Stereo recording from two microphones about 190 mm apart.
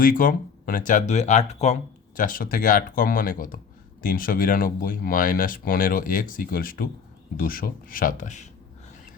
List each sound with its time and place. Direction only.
0.0 s speech: 45° left (ahead or behind)